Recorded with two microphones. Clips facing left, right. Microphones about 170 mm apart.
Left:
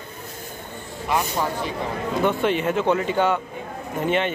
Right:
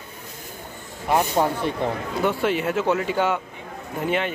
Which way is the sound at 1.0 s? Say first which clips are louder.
Right 3 dB; 50° right (ahead or behind).